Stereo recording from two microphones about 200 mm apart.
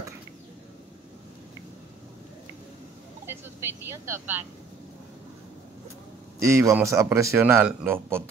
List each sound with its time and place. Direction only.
3.8 s speech: 15° right (ahead or behind)
6.4 s speech: 15° right (ahead or behind)